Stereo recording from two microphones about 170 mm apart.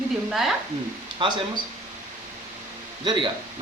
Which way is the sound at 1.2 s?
30° right (ahead or behind).